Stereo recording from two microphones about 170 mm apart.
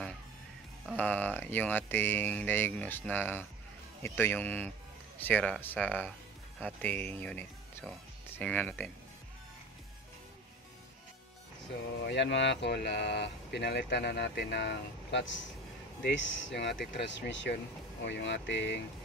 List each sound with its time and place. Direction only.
0.8 s speech: 10° left (ahead or behind)
12.1 s speech: 90° left